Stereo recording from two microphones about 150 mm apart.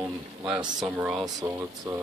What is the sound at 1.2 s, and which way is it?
Speech, 20° right (ahead or behind).